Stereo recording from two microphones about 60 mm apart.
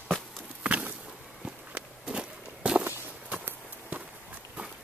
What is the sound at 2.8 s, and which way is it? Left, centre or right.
Walk, right.